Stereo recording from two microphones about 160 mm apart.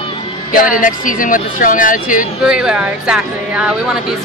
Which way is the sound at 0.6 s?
60° left (ahead or behind).